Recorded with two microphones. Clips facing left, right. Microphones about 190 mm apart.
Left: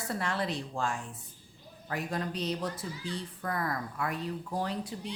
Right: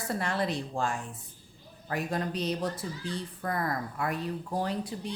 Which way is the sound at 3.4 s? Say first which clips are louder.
Right 2 dB; 35° right (ahead or behind).